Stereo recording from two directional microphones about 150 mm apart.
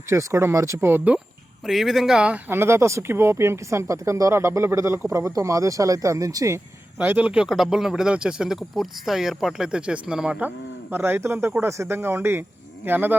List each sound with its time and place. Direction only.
0.1 s speech: 20° right (ahead or behind)
1.6 s speech: centre (ahead or behind); by 6.6 s 20° right (ahead or behind)
7.0 s speech: 10° right (ahead or behind)